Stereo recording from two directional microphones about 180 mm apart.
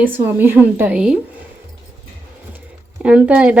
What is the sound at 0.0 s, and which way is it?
Speech, 10° right (ahead or behind).